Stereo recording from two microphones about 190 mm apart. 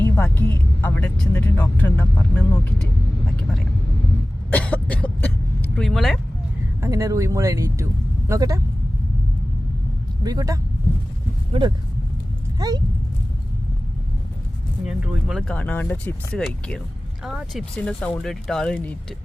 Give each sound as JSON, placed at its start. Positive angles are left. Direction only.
{"t": 0.0, "sound": "music", "side_deg": 10}
{"t": 1.6, "sound": "vehicle", "side_deg": 10}
{"t": 4.5, "sound": "throat clearing", "side_deg": 5}
{"t": 6.8, "sound": "speech", "side_deg": -15}
{"t": 10.2, "sound": "speech", "side_deg": -20}
{"t": 12.5, "sound": "a sound", "side_deg": -20}
{"t": 14.8, "sound": "a sound", "side_deg": -5}
{"t": 17.2, "sound": "speech", "side_deg": 0}